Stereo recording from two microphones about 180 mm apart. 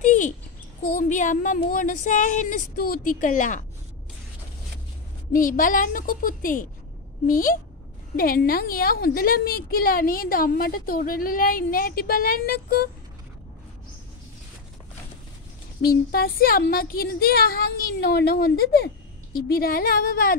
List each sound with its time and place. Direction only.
0.0 s a sound: 45° left (ahead or behind)
0.9 s a woman's voice: 45° left (ahead or behind)
5.3 s a woman's voice: 50° left (ahead or behind)
16.1 s speech: 55° left (ahead or behind)